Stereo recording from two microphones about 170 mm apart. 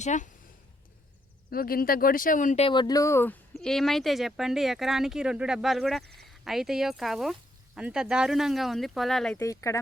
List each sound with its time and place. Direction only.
0.0 s speech: 45° left (ahead or behind)
1.5 s speech: 60° left (ahead or behind)
2.6 s speech: 25° left (ahead or behind); by 9.4 s 5° left (ahead or behind)
9.4 s speech: 20° left (ahead or behind)